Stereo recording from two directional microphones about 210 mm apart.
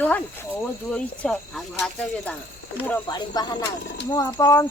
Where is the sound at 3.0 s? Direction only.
20° left (ahead or behind).